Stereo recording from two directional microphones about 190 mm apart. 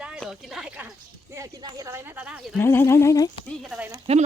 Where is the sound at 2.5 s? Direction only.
10° left (ahead or behind).